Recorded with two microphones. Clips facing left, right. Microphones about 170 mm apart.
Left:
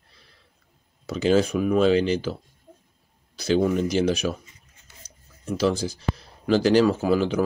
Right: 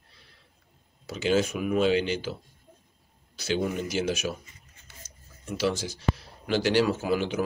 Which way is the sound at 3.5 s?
35° left (ahead or behind).